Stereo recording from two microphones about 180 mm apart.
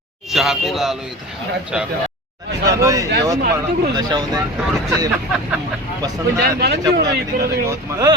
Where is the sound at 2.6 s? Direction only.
20° right (ahead or behind).